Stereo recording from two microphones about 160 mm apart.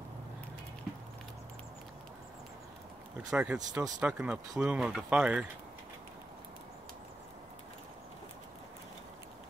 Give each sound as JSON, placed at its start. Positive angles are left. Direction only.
{"t": 3.3, "sound": "speech", "side_deg": -5}
{"t": 3.5, "sound": "speech", "side_deg": -25}
{"t": 4.0, "sound": "speech", "side_deg": -5}